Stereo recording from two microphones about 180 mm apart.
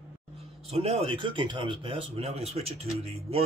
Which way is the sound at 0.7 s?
35° right (ahead or behind).